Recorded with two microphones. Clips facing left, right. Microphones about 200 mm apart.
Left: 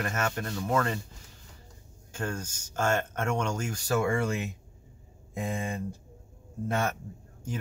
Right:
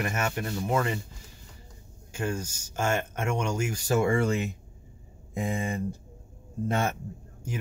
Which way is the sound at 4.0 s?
25° right (ahead or behind).